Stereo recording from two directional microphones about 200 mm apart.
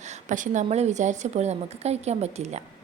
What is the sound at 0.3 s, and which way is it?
A woman's voice, 40° right (ahead or behind).